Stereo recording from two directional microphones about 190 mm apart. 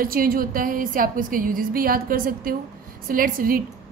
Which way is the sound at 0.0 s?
50° right (ahead or behind).